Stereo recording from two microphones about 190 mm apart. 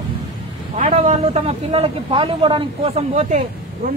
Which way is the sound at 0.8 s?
35° right (ahead or behind).